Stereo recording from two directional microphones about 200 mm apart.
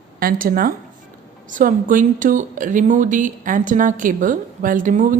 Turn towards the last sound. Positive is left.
turn(degrees=-40)  # may be behind; listen again after turning